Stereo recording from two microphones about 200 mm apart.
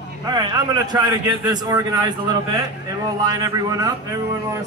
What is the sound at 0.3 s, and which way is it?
A man's voice, 20° right (ahead or behind).